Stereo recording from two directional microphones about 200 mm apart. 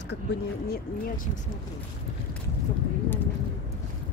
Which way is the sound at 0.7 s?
45° left (ahead or behind).